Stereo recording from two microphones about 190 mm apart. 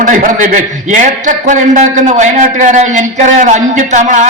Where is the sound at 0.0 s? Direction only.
40° right (ahead or behind).